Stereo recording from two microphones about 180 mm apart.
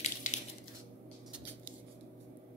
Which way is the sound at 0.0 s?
40° left (ahead or behind).